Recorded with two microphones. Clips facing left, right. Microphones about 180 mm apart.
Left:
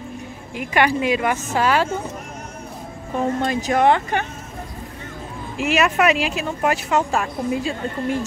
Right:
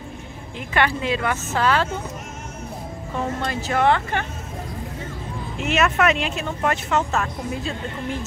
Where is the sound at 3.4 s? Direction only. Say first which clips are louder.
Left 3 dB; 15° left (ahead or behind).